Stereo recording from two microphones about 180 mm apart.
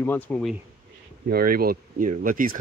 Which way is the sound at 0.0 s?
10° left (ahead or behind).